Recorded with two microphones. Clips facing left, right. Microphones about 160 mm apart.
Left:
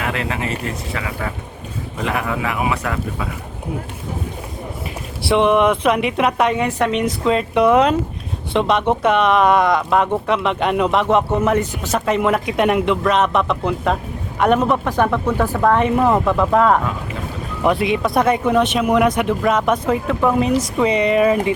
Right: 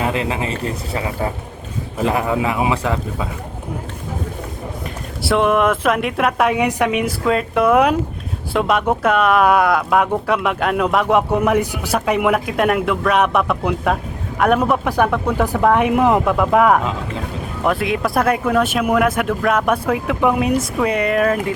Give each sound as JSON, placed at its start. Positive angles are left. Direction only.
{"t": 0.0, "sound": "a man's voice", "side_deg": -30}
{"t": 5.2, "sound": "speech", "side_deg": 0}